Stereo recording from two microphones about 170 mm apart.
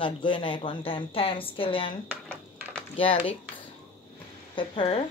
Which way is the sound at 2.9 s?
30° left (ahead or behind).